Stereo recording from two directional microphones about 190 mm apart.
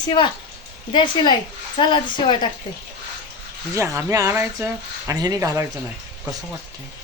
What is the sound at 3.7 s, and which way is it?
Speech, 15° right (ahead or behind).